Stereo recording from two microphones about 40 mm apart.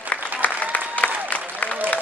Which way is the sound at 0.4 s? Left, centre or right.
Left.